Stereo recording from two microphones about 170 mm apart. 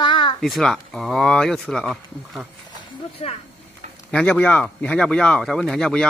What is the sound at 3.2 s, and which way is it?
Speech, 40° left (ahead or behind).